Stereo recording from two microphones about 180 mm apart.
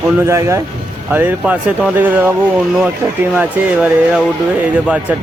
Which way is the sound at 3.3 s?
5° right (ahead or behind).